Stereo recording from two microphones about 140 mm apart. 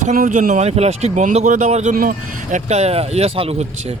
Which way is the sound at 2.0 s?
70° right (ahead or behind).